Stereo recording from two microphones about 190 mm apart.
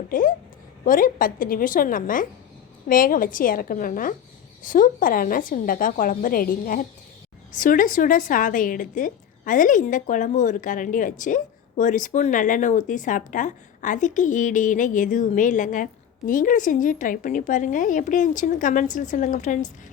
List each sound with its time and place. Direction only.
0.1 s a woman's voice: 45° left (ahead or behind)